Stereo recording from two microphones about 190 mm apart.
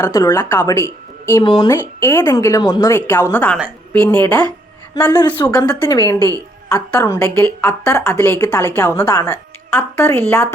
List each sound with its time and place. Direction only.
0.0 s a woman's voice: 15° left (ahead or behind)
5.5 s a woman's voice: 20° left (ahead or behind)